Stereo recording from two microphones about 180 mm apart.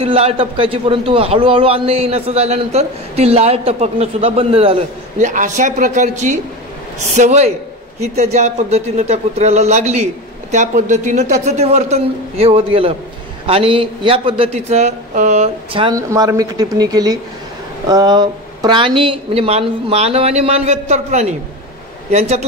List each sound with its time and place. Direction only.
0.0 s a man's voice: 30° right (ahead or behind)
5.2 s a man's voice: 45° right (ahead or behind); by 16.0 s 30° right (ahead or behind)
16.1 s a man's voice: 20° right (ahead or behind); by 22.5 s 35° right (ahead or behind)